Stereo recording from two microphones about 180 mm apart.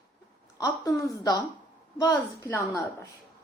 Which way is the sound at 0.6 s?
20° left (ahead or behind).